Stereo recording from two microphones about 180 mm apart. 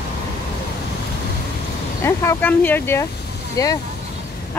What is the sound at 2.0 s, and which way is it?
Speech, 15° left (ahead or behind).